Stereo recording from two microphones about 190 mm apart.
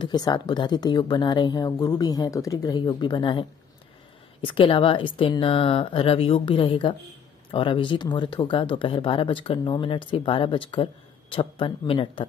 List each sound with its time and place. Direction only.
0.0 s speech: 20° left (ahead or behind)